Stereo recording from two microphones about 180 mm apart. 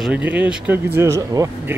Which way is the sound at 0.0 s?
5° right (ahead or behind).